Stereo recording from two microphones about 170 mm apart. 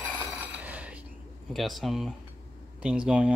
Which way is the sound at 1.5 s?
Centre (ahead or behind).